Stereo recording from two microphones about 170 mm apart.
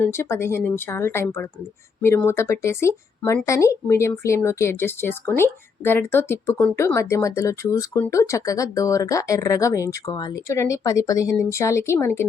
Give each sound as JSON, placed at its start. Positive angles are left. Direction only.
{"t": 0.0, "sound": "speech", "side_deg": 15}